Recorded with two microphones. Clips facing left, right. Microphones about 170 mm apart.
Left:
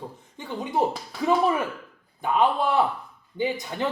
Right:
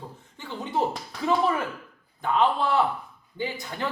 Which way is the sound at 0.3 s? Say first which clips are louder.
Left 2 dB; 15° left (ahead or behind).